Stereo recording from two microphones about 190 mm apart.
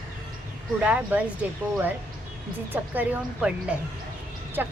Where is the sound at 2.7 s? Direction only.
10° right (ahead or behind).